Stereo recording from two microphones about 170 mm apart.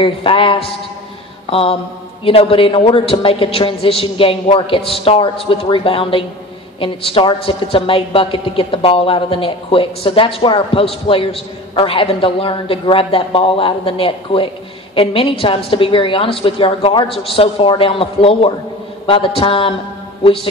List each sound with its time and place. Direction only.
0.0 s a woman's voice: 30° left (ahead or behind)